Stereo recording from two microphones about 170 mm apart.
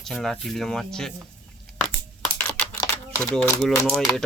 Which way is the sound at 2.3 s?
10° left (ahead or behind).